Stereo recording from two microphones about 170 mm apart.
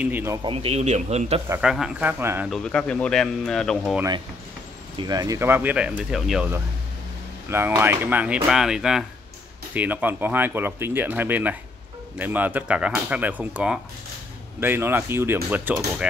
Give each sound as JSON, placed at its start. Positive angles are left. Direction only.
{"t": 0.0, "sound": "speech", "side_deg": -15}
{"t": 0.4, "sound": "a man's voice", "side_deg": -35}
{"t": 1.6, "sound": "speech", "side_deg": -5}
{"t": 2.5, "sound": "speech", "side_deg": 5}
{"t": 4.9, "sound": "speech", "side_deg": -20}
{"t": 7.4, "sound": "speech", "side_deg": -15}